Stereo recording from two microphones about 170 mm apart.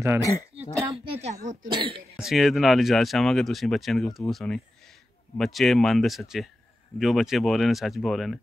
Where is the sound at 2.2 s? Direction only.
Centre (ahead or behind).